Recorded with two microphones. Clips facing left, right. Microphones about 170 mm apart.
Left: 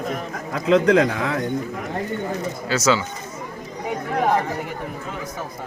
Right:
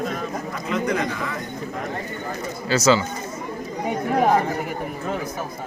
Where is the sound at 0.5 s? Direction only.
85° left.